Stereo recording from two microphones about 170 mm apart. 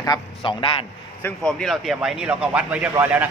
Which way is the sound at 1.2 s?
5° left (ahead or behind).